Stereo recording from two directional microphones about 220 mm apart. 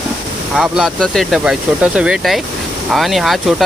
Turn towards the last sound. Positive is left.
turn(degrees=0)  # may be behind; listen again after turning